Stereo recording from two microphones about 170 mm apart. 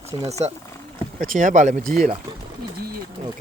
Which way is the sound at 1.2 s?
50° right (ahead or behind).